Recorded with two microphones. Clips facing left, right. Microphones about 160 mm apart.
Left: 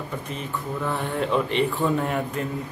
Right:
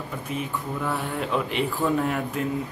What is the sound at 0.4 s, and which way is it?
Speech, 5° right (ahead or behind).